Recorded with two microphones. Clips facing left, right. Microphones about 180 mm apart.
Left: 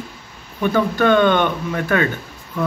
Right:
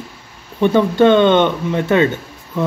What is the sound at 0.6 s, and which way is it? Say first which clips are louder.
Speech: right 5 dB; 25° right (ahead or behind).